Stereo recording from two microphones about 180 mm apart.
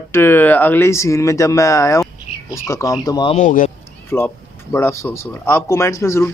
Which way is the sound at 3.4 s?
40° left (ahead or behind).